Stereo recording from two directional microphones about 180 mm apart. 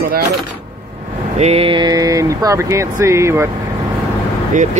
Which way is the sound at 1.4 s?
35° right (ahead or behind).